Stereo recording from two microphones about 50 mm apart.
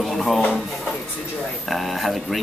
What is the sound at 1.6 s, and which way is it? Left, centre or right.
Speech, centre.